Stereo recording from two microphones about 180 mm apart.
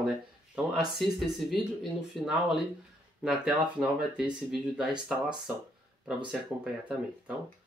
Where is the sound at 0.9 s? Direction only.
Centre (ahead or behind).